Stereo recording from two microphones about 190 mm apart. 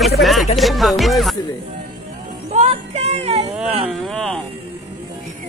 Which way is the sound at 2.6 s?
35° right (ahead or behind).